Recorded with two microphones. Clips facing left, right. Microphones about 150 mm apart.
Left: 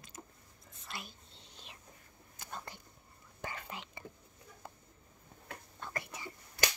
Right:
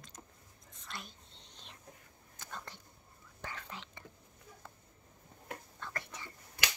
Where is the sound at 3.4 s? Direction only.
10° left (ahead or behind).